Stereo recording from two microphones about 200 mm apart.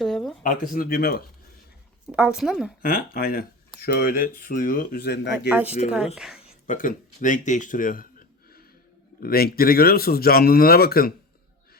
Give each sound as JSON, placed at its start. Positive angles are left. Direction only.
{"t": 0.0, "sound": "a sound", "side_deg": 0}
{"t": 0.4, "sound": "speech", "side_deg": 45}
{"t": 2.1, "sound": "speech", "side_deg": -5}
{"t": 2.8, "sound": "speech", "side_deg": 45}
{"t": 5.5, "sound": "speech", "side_deg": -10}
{"t": 6.5, "sound": "speech", "side_deg": 40}
{"t": 9.2, "sound": "speech", "side_deg": 50}